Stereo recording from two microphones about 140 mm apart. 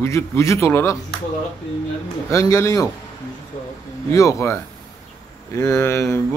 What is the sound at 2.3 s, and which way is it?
Speech, 20° left (ahead or behind).